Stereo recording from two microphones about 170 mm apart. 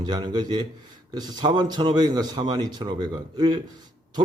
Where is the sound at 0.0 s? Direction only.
25° right (ahead or behind).